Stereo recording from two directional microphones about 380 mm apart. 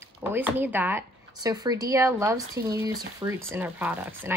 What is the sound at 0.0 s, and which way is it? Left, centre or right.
A woman's voice, centre.